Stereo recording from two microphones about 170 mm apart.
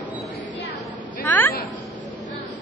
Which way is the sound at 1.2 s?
10° left (ahead or behind).